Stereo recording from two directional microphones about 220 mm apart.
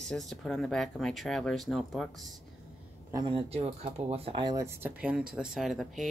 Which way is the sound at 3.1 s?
20° right (ahead or behind).